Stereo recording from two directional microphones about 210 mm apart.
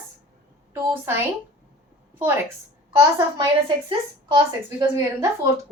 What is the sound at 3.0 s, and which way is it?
A woman's voice, 15° right (ahead or behind).